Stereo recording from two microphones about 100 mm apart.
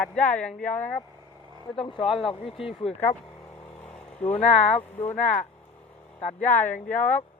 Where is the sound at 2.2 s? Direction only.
70° left (ahead or behind).